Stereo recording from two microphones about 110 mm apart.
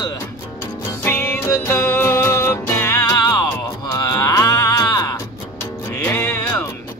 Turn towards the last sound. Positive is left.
turn(degrees=20)  # may be behind; listen again after turning